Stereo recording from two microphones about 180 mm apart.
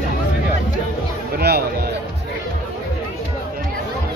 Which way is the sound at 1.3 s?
60° right (ahead or behind).